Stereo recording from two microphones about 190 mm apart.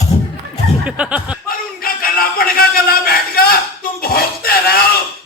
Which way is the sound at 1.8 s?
50° left (ahead or behind).